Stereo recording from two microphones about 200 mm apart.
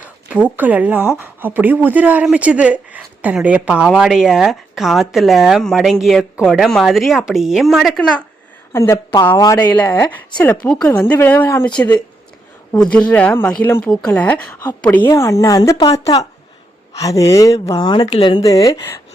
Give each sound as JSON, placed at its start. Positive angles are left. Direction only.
{"t": 0.3, "sound": "speech", "side_deg": -10}
{"t": 8.7, "sound": "a woman's voice", "side_deg": 15}